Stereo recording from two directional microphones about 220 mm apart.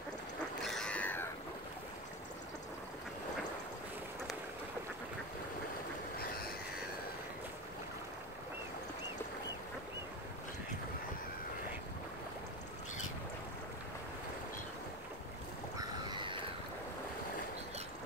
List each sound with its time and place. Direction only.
0.6 s wild animals: centre (ahead or behind)
6.1 s train: 45° left (ahead or behind)
15.8 s a sound: 20° right (ahead or behind)